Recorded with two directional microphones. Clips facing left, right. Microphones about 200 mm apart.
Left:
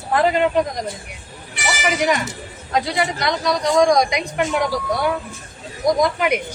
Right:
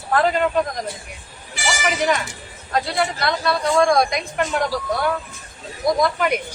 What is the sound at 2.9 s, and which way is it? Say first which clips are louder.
Speech: left 1 dB; 15° left (ahead or behind).